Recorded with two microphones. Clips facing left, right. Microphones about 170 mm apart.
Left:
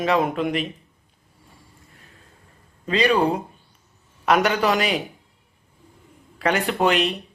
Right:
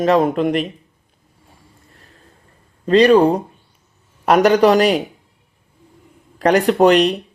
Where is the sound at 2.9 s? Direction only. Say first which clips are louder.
Right 9 dB; centre (ahead or behind).